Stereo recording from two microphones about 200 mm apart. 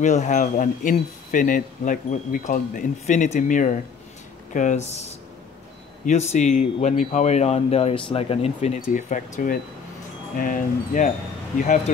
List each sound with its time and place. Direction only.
0.0 s speech: 35° left (ahead or behind)